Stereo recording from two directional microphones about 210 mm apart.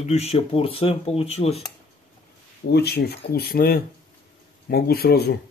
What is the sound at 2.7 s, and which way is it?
Speech, 50° left (ahead or behind).